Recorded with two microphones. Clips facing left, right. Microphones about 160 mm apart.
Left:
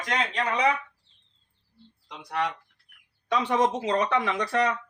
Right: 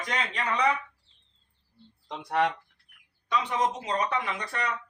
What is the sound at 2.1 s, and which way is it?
Speech, 50° right (ahead or behind).